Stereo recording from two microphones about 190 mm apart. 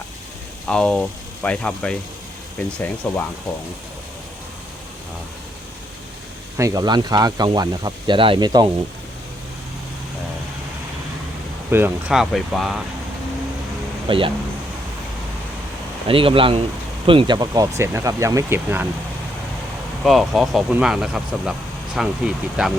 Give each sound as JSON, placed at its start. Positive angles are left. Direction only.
{"t": 0.7, "sound": "speech", "side_deg": 5}
{"t": 3.0, "sound": "speech", "side_deg": 5}
{"t": 6.6, "sound": "speech", "side_deg": -20}
{"t": 11.7, "sound": "speech", "side_deg": -10}
{"t": 14.1, "sound": "speech", "side_deg": -25}
{"t": 16.0, "sound": "speech", "side_deg": -30}
{"t": 20.1, "sound": "speech", "side_deg": 0}